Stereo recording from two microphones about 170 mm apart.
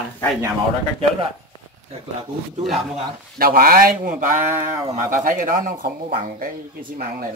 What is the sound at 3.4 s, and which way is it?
Speech, 60° right (ahead or behind).